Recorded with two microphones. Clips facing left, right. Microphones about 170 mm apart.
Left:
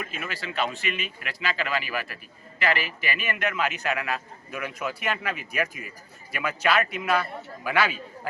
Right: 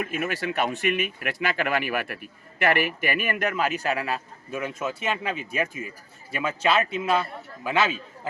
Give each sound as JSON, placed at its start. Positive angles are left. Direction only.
{"t": 0.0, "sound": "a man's voice", "side_deg": -55}